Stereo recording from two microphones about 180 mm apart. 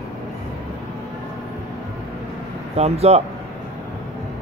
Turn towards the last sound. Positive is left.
turn(degrees=-35)  # may be behind; listen again after turning